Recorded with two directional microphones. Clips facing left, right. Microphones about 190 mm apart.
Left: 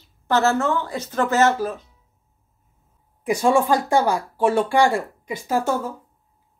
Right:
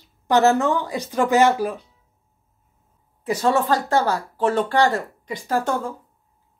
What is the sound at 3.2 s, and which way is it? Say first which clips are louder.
Speech: left 2 dB; 10° left (ahead or behind).